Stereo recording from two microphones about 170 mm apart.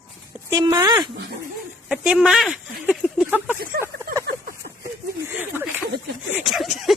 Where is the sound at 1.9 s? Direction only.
5° right (ahead or behind).